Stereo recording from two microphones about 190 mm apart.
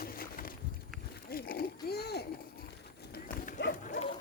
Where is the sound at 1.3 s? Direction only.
50° left (ahead or behind).